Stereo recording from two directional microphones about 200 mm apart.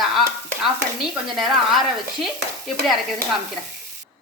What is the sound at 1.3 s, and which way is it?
Speech, centre (ahead or behind).